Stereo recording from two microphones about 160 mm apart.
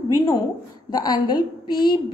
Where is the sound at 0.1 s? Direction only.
25° left (ahead or behind).